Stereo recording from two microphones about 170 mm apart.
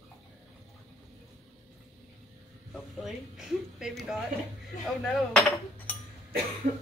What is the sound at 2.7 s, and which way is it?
Speech, centre (ahead or behind).